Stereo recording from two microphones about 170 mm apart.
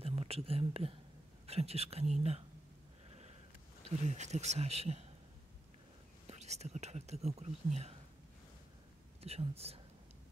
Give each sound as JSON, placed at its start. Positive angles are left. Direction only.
{"t": 0.0, "sound": "speech", "side_deg": -35}
{"t": 3.1, "sound": "sniff", "side_deg": -40}
{"t": 3.8, "sound": "speech", "side_deg": -40}
{"t": 6.2, "sound": "speech", "side_deg": -40}
{"t": 9.2, "sound": "speech", "side_deg": -35}